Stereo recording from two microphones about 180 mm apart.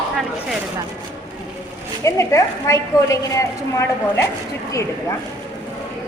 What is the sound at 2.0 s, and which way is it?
A woman's voice, 15° left (ahead or behind).